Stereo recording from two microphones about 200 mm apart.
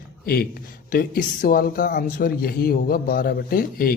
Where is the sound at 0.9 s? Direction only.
45° left (ahead or behind).